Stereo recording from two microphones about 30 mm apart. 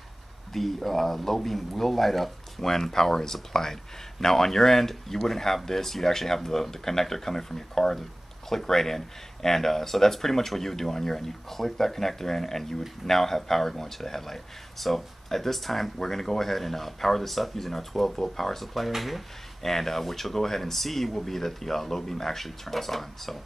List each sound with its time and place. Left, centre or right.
0.5 s speech: centre
2.6 s speech: centre
19.6 s speech: centre